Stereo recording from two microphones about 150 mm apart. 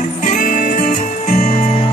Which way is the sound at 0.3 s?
55° left (ahead or behind).